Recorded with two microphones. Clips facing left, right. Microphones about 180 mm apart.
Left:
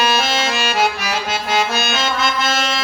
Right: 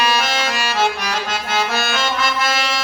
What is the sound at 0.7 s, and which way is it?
Accordion, 10° left (ahead or behind).